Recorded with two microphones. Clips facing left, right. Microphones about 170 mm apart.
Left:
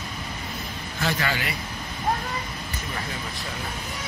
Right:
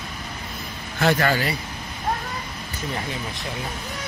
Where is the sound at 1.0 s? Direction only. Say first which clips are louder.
Right 7 dB; 45° right (ahead or behind).